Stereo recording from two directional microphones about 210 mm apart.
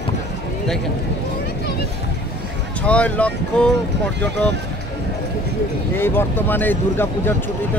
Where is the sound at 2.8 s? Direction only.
5° left (ahead or behind).